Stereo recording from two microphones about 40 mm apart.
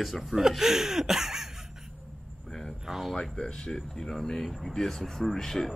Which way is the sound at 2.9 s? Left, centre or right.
Centre.